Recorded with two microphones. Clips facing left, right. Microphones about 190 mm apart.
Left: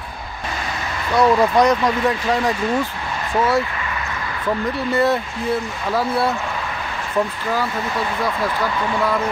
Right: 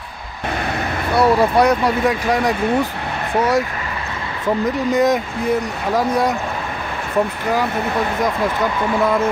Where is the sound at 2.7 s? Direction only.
60° right (ahead or behind).